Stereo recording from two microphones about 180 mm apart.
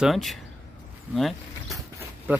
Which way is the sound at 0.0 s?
Centre (ahead or behind).